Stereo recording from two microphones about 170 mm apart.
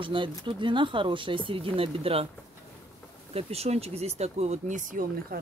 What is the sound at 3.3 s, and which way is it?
Speech, 35° right (ahead or behind).